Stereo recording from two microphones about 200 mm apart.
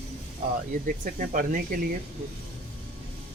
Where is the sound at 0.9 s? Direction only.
45° right (ahead or behind).